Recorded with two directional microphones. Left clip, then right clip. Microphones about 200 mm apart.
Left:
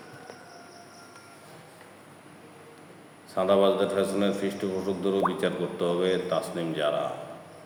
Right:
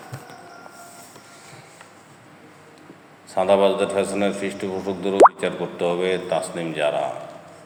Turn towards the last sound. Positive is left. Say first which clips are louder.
# right 5 dB
turn(degrees=0)  # may be behind; listen again after turning